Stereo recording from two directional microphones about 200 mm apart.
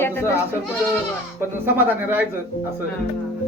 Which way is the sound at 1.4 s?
10° right (ahead or behind).